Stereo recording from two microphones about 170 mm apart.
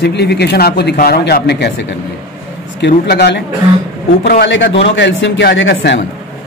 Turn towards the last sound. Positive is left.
turn(degrees=90)